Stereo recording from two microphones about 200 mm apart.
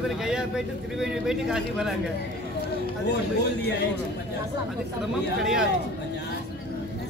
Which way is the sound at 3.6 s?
55° left (ahead or behind).